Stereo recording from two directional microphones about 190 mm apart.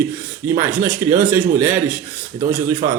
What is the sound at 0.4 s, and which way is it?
Speech, 15° right (ahead or behind).